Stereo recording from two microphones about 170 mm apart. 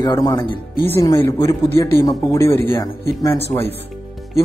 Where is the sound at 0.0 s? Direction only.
20° left (ahead or behind).